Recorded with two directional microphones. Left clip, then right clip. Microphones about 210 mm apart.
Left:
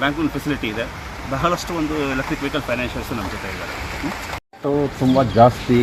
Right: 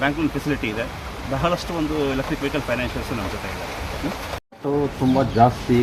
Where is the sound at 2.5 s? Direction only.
Centre (ahead or behind).